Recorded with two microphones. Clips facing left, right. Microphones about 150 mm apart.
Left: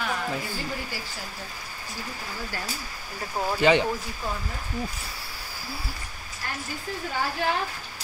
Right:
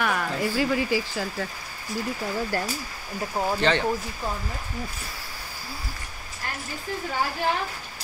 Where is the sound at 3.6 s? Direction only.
10° left (ahead or behind).